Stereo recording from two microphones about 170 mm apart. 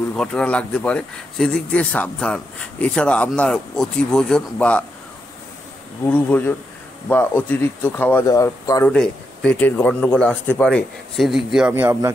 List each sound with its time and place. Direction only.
0.1 s speech: 5° left (ahead or behind)
6.0 s speech: 10° left (ahead or behind)
8.9 s speech: 5° left (ahead or behind); by 12.1 s 15° right (ahead or behind)